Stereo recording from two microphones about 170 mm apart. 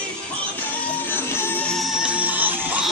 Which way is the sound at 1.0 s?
10° left (ahead or behind).